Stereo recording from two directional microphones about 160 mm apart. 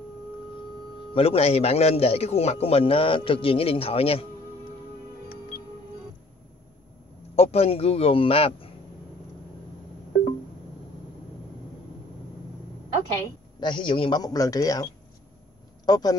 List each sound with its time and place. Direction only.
1.1 s a man's voice: 40° left (ahead or behind)
7.3 s a man's voice: 40° left (ahead or behind)
13.6 s a man's voice: 30° left (ahead or behind)